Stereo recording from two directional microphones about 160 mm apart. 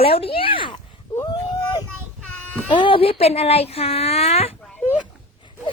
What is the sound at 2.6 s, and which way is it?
Speech, 30° left (ahead or behind).